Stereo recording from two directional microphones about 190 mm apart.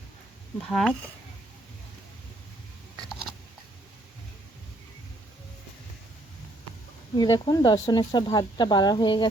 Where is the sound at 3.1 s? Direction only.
Centre (ahead or behind).